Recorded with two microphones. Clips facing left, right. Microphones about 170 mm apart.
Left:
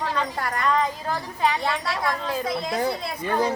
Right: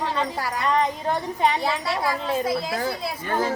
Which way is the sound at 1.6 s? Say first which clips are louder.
Right 1 dB; 5° right (ahead or behind).